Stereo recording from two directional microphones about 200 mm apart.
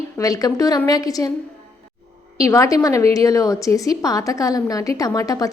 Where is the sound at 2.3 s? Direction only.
15° left (ahead or behind).